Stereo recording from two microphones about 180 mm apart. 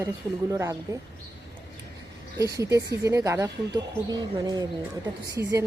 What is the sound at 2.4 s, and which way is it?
Speech, 20° right (ahead or behind).